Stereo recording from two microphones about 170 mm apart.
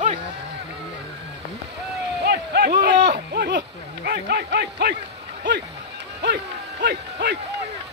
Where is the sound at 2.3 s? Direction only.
70° right (ahead or behind).